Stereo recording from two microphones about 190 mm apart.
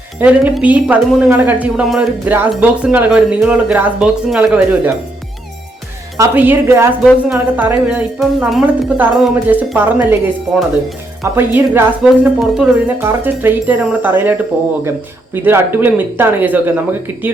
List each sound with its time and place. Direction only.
0.2 s a woman's voice: 10° right (ahead or behind)
1.6 s music: centre (ahead or behind)
2.5 s a woman's voice: 5° right (ahead or behind)
6.1 s a woman's voice: 10° right (ahead or behind)
11.2 s a woman's voice: 10° right (ahead or behind)